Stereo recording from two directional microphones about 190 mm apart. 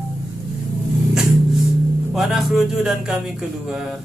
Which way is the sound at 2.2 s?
Centre (ahead or behind).